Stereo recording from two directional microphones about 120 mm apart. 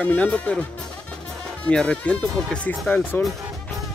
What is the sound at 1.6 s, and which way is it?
Speech, 10° left (ahead or behind).